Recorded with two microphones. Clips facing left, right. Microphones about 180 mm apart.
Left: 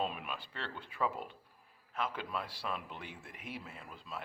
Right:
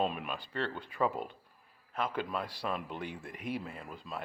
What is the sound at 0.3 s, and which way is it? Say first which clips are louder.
Speech: right 7 dB; 40° right (ahead or behind).